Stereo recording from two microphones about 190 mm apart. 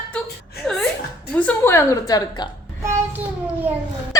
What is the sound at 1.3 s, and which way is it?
Speech, 10° left (ahead or behind).